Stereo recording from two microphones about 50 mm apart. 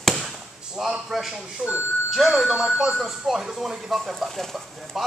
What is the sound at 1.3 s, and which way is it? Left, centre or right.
Speech, right.